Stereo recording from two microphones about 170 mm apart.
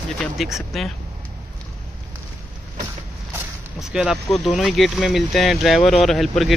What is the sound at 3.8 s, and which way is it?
Speech, 5° right (ahead or behind).